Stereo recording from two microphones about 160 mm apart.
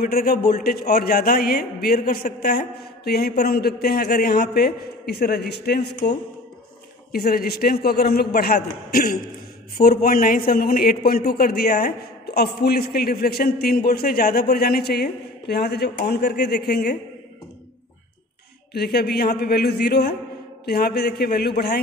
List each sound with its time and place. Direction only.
0.0 s a man's voice: 70° left (ahead or behind); by 5.9 s 90° left
7.1 s a man's voice: 75° left (ahead or behind)
18.7 s a man's voice: 90° left